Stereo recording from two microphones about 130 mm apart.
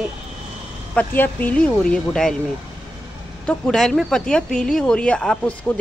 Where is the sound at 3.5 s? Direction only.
5° left (ahead or behind).